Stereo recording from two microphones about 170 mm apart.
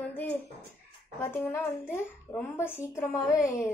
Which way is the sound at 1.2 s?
15° left (ahead or behind).